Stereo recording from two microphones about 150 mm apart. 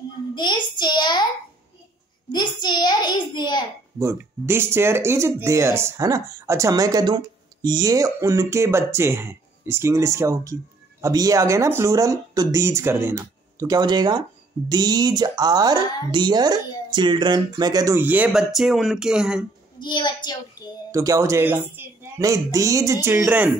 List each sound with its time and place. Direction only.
0.3 s a child's voice: 30° left (ahead or behind)
2.3 s a child's voice: 30° left (ahead or behind)
4.0 s speech: 15° right (ahead or behind)
18.0 s speech: 10° right (ahead or behind)
19.8 s a child's voice: 30° left (ahead or behind)
20.9 s speech: 20° right (ahead or behind)